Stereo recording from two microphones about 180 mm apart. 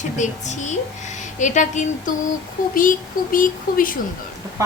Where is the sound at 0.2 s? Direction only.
40° left (ahead or behind).